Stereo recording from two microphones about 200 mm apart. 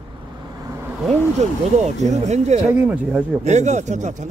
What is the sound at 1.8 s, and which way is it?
Speech, 35° right (ahead or behind).